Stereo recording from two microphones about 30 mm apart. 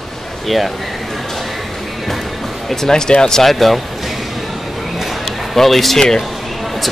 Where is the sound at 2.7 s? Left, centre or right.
Centre.